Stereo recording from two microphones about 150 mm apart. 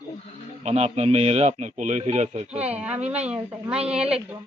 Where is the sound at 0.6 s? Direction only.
45° right (ahead or behind).